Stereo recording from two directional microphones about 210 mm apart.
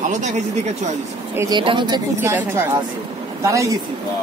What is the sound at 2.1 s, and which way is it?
Speech, 10° right (ahead or behind).